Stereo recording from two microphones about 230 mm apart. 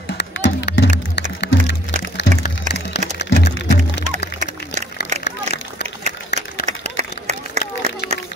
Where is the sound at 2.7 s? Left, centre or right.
Right.